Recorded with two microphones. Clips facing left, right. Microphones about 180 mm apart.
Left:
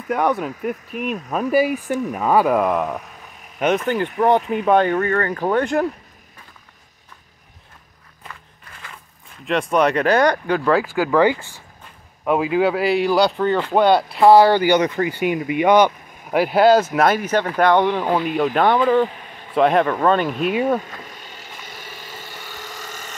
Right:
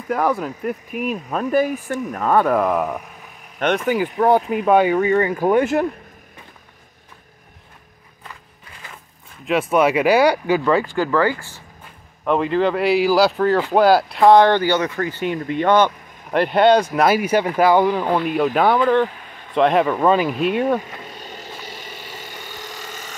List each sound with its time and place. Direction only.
0.1 s speech: centre (ahead or behind)
1.4 s speech: 10° left (ahead or behind)
3.8 s speech: 5° right (ahead or behind)
9.4 s speech: 5° right (ahead or behind)
11.1 s speech: 20° left (ahead or behind)
12.3 s speech: 5° left (ahead or behind)